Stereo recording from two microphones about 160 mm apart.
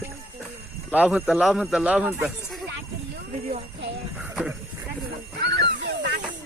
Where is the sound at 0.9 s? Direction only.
10° right (ahead or behind).